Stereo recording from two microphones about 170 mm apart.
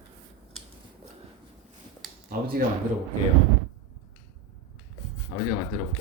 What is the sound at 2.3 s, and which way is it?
Speech, 60° right (ahead or behind).